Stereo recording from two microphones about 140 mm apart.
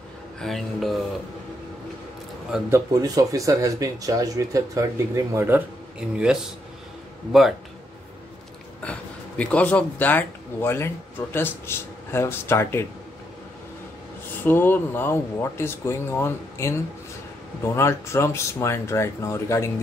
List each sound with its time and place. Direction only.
0.4 s speech: centre (ahead or behind)
2.9 s speech: 25° right (ahead or behind)
5.9 s speech: 5° right (ahead or behind)
9.4 s speech: 10° left (ahead or behind)
14.4 s speech: 15° left (ahead or behind)
17.7 s speech: 20° left (ahead or behind)